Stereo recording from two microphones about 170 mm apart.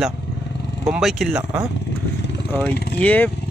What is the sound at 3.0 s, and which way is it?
Speech, 10° left (ahead or behind).